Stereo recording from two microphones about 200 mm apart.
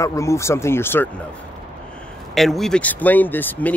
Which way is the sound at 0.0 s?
15° left (ahead or behind).